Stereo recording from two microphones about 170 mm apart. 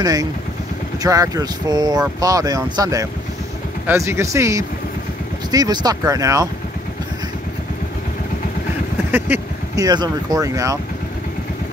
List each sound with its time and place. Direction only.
0.0 s speech: 20° right (ahead or behind)
9.1 s a sound: 15° right (ahead or behind)
9.8 s speech: 25° right (ahead or behind)